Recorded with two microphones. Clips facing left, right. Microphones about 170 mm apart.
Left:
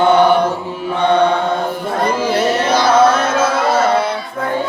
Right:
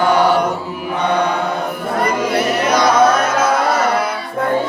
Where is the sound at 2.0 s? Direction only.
30° left (ahead or behind).